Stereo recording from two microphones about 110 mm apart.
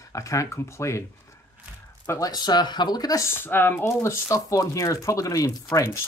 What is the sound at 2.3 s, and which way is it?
Speech, 40° left (ahead or behind).